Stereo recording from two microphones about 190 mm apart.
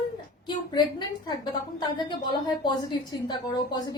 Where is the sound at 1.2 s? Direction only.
20° left (ahead or behind).